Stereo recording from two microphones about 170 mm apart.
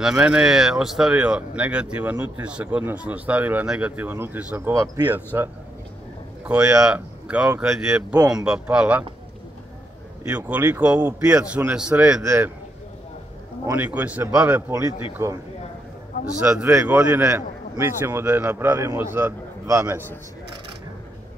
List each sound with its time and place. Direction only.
0.0 s speech: 5° right (ahead or behind)
8.2 s speech: 20° right (ahead or behind)
8.5 s speech: 5° right (ahead or behind)
10.2 s speech: 10° right (ahead or behind)
13.7 s speech: 10° right (ahead or behind)